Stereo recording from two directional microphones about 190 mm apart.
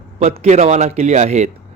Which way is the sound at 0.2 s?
35° right (ahead or behind).